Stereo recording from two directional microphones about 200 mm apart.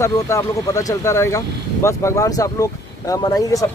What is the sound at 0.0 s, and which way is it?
Speech, 15° left (ahead or behind).